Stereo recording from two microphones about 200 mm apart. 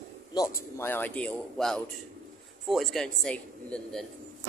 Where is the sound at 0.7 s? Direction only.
10° left (ahead or behind).